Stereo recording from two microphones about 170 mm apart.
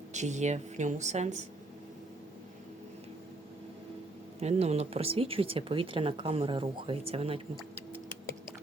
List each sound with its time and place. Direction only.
0.1 s a woman's voice: 45° right (ahead or behind)
4.4 s speech: 40° right (ahead or behind)